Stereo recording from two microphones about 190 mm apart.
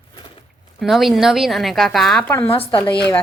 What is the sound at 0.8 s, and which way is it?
A woman's voice, centre (ahead or behind).